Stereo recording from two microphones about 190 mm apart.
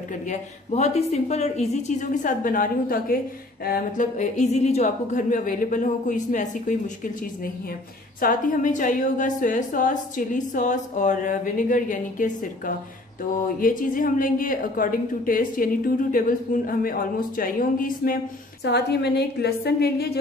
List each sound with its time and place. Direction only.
0.3 s a woman's voice: 35° left (ahead or behind)
8.2 s a woman's voice: 45° left (ahead or behind)
18.6 s a woman's voice: 60° left (ahead or behind)